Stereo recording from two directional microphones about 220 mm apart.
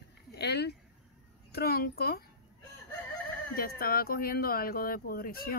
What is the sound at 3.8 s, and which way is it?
Speech, 45° left (ahead or behind).